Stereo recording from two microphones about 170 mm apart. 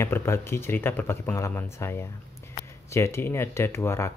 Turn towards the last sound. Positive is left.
turn(degrees=15)  # may be behind; listen again after turning